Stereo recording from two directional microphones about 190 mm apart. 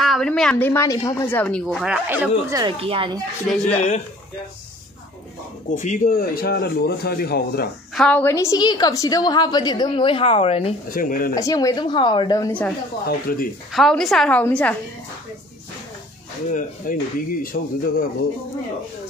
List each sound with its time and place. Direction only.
0.0 s speech: centre (ahead or behind)
2.0 s speech: 10° right (ahead or behind)
2.5 s a woman's voice: 25° right (ahead or behind)
3.4 s a woman's voice: 5° left (ahead or behind)
5.8 s speech: 45° left (ahead or behind)
7.9 s a woman's voice: 5° left (ahead or behind); by 10.7 s 30° left (ahead or behind)
10.9 s speech: 50° left (ahead or behind)
11.3 s a woman's voice: 20° left (ahead or behind)
13.0 s speech: 50° left (ahead or behind)
13.7 s a woman's voice: centre (ahead or behind)
16.4 s speech: 45° left (ahead or behind)